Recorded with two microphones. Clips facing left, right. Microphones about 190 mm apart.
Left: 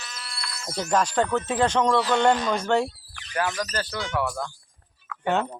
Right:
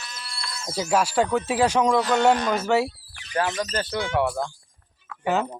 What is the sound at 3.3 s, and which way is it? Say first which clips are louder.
Speech: right 2 dB; 25° right (ahead or behind).